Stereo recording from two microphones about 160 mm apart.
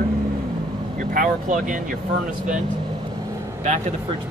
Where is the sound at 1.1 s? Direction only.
55° right (ahead or behind).